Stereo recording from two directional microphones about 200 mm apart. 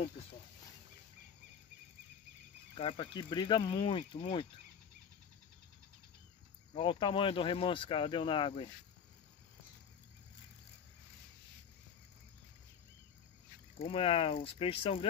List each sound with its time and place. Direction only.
2.7 s speech: 25° left (ahead or behind)
6.7 s speech: 25° left (ahead or behind)
13.7 s speech: 30° left (ahead or behind)